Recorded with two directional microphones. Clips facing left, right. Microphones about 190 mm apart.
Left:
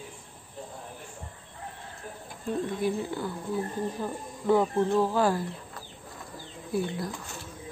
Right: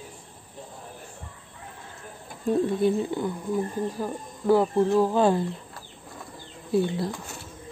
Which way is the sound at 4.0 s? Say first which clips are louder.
Right 3 dB; 5° right (ahead or behind).